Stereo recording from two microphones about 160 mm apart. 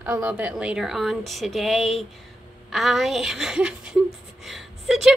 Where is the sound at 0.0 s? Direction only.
10° right (ahead or behind).